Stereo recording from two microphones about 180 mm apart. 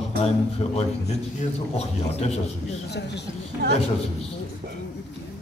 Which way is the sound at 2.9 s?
70° left (ahead or behind).